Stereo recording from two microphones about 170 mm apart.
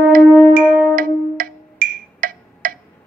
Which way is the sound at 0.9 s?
55° right (ahead or behind).